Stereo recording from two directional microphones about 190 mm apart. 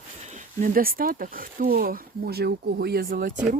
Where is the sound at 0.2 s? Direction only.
40° right (ahead or behind).